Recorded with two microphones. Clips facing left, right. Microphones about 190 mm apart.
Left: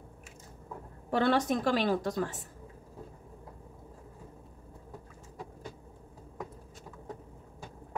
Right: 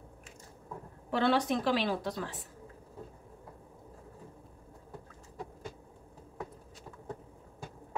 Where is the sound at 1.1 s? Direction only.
45° left (ahead or behind).